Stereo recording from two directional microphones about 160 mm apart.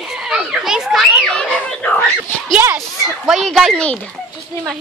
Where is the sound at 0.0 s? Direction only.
5° right (ahead or behind).